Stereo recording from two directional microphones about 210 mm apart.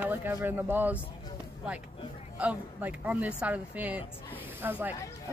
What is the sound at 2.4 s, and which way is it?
Speech, 5° right (ahead or behind).